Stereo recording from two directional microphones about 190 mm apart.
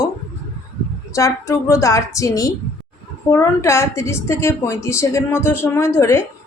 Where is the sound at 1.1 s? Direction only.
15° left (ahead or behind).